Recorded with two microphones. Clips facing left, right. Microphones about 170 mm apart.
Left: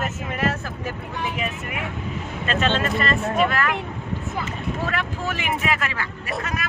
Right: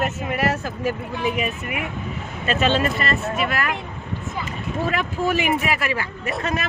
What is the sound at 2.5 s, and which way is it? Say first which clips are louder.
Speech: right 2 dB; 10° right (ahead or behind).